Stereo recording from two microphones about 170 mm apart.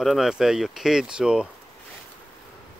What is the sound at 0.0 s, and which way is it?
Speech, centre (ahead or behind).